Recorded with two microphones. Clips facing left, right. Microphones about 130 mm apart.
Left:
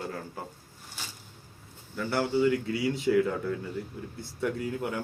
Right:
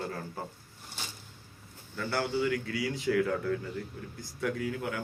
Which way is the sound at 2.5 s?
25° left (ahead or behind).